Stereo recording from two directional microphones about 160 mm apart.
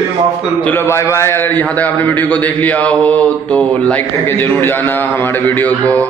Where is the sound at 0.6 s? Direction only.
15° left (ahead or behind).